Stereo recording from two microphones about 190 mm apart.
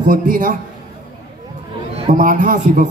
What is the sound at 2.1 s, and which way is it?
Speech, 45° right (ahead or behind).